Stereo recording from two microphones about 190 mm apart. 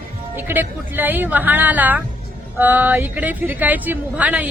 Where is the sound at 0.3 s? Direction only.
10° right (ahead or behind).